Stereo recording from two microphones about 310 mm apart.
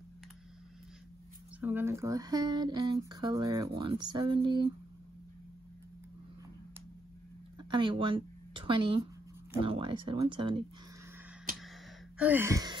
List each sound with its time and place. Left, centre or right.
1.6 s speech: centre
7.5 s a sound: centre
9.6 s speech: centre
12.2 s speech: centre